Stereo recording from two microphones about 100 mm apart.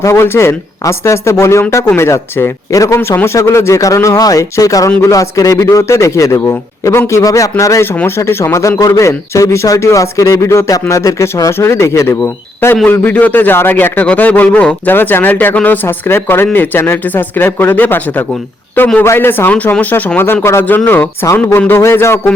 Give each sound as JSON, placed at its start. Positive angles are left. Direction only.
{"t": 0.0, "sound": "speech", "side_deg": 25}